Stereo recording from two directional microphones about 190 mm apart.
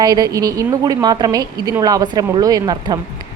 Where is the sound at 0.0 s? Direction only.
20° right (ahead or behind).